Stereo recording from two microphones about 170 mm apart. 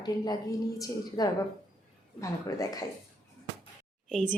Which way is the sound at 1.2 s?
20° left (ahead or behind).